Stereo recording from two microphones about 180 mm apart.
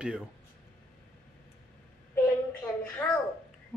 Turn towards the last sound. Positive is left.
turn(degrees=10)  # may be behind; listen again after turning